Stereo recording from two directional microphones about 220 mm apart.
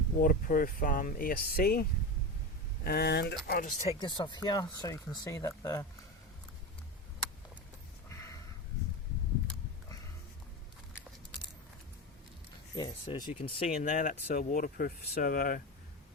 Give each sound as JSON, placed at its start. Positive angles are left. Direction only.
{"t": 0.2, "sound": "speech", "side_deg": 40}
{"t": 3.8, "sound": "speech", "side_deg": 20}
{"t": 8.1, "sound": "a sound", "side_deg": 15}
{"t": 12.7, "sound": "speech", "side_deg": 20}
{"t": 13.8, "sound": "speech", "side_deg": 35}